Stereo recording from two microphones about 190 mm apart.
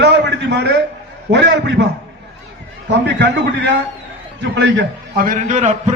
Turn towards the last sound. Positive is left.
turn(degrees=-35)  # may be behind; listen again after turning